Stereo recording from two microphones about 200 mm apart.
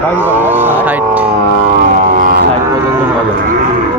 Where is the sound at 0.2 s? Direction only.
10° right (ahead or behind).